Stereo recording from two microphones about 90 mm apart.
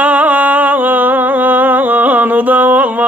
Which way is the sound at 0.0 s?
15° right (ahead or behind).